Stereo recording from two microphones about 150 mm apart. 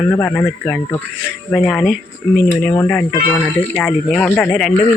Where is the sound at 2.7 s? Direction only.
15° left (ahead or behind).